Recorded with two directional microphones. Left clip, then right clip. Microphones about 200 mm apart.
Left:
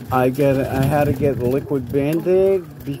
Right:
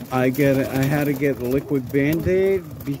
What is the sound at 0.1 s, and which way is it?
Speech, centre (ahead or behind).